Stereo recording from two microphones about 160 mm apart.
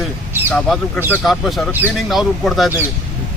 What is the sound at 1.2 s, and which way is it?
Speech, centre (ahead or behind).